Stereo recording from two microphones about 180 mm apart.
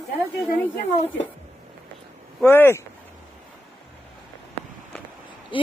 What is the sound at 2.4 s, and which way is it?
Speech, 10° left (ahead or behind).